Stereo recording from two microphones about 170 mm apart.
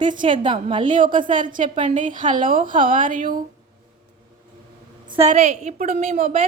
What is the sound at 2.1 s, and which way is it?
A woman's voice, 50° right (ahead or behind).